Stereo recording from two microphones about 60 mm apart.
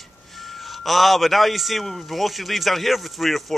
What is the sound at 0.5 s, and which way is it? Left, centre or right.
A man's voice, centre.